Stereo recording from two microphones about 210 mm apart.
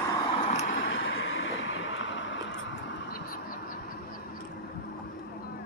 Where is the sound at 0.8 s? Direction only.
65° left (ahead or behind); by 3.8 s 40° left (ahead or behind).